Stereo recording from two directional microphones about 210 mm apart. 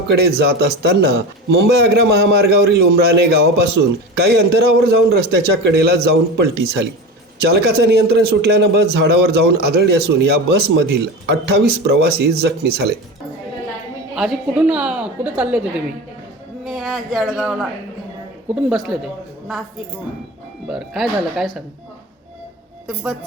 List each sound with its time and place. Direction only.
0.2 s a man's voice: 50° right (ahead or behind)
14.2 s a woman's voice: 5° right (ahead or behind)
20.7 s a woman's voice: centre (ahead or behind)